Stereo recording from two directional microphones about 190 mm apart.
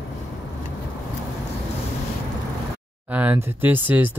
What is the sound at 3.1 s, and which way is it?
Speech, 10° right (ahead or behind).